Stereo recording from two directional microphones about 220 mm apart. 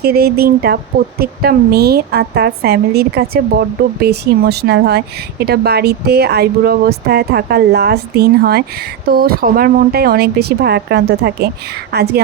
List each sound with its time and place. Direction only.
0.0 s a woman's voice: 45° right (ahead or behind)